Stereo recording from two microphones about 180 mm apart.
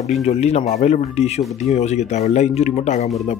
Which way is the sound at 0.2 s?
35° left (ahead or behind).